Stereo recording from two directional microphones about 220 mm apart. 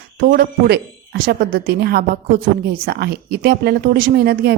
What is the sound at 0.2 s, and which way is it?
A woman's voice, 40° right (ahead or behind).